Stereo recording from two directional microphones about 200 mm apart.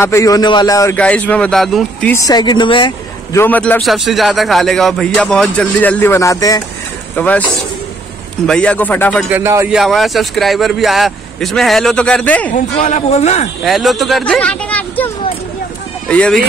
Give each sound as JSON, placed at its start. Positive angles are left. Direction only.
{"t": 0.0, "sound": "speech", "side_deg": 15}
{"t": 0.9, "sound": "speech", "side_deg": 5}
{"t": 3.3, "sound": "a man's voice", "side_deg": 10}
{"t": 8.5, "sound": "speech", "side_deg": 5}
{"t": 9.3, "sound": "speech", "side_deg": -15}
{"t": 9.8, "sound": "a man's voice", "side_deg": 0}
{"t": 12.7, "sound": "speech", "side_deg": 35}
{"t": 13.7, "sound": "speech", "side_deg": 0}
{"t": 16.1, "sound": "a man's voice", "side_deg": 5}